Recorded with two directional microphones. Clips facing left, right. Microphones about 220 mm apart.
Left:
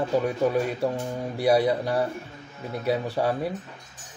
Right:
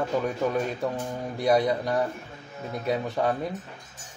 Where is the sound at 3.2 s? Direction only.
5° left (ahead or behind).